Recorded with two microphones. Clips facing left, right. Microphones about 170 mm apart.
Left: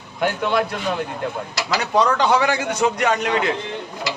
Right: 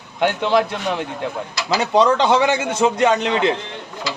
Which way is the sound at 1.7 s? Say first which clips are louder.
Right 3 dB; 25° right (ahead or behind).